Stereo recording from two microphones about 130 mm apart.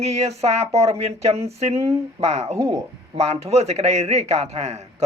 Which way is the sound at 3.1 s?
55° right (ahead or behind).